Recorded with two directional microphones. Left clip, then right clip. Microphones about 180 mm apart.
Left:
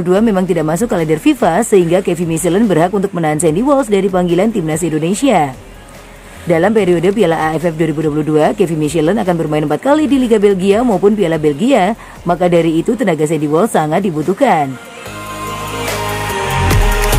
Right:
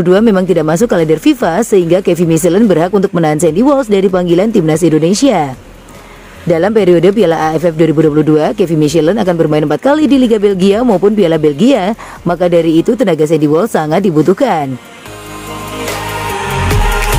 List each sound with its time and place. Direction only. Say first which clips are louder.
0.0 s speech: right 4 dB; 30° right (ahead or behind)
6.5 s speech: right 3 dB; 30° right (ahead or behind)